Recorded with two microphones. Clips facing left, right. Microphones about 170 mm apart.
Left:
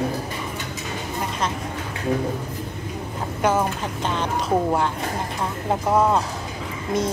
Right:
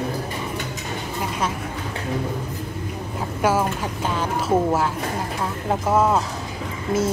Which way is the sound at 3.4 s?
5° right (ahead or behind).